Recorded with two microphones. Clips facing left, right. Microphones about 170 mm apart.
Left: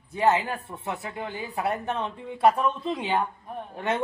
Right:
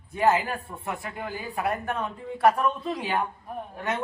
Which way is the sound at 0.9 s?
20° left (ahead or behind).